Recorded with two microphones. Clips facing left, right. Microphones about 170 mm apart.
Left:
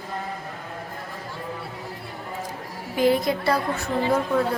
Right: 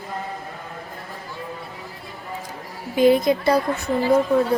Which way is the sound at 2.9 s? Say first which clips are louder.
Right 5 dB; 20° right (ahead or behind).